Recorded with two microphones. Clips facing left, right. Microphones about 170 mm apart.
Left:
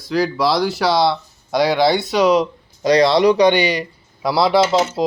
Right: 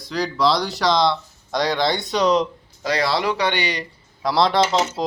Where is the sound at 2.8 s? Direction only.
20° left (ahead or behind).